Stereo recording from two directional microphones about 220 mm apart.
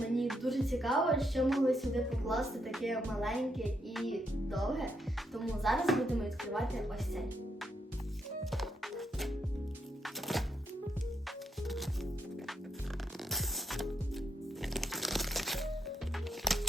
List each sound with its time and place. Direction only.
0.1 s speech: centre (ahead or behind)
8.4 s music: centre (ahead or behind)
13.3 s music: centre (ahead or behind)